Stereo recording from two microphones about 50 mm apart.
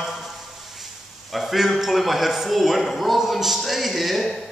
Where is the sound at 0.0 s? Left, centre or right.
Centre.